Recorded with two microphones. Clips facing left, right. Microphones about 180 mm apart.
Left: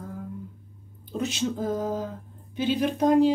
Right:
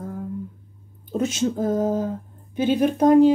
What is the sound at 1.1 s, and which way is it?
Speech, 45° right (ahead or behind).